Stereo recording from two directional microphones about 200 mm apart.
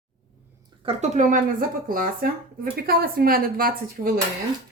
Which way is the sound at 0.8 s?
30° right (ahead or behind).